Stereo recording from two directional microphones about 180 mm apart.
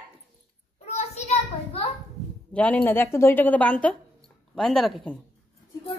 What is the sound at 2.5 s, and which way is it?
A woman's voice, 10° left (ahead or behind).